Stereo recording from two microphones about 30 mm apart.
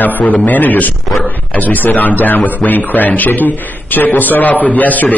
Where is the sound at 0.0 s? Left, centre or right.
Left.